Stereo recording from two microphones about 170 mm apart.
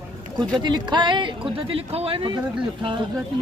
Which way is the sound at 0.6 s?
25° right (ahead or behind).